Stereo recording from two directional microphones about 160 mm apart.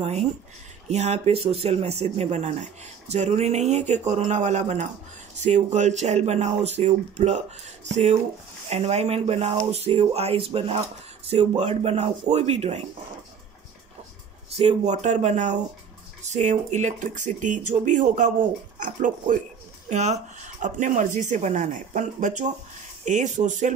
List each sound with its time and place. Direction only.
0.0 s speech: 40° right (ahead or behind)
14.6 s speech: 45° right (ahead or behind)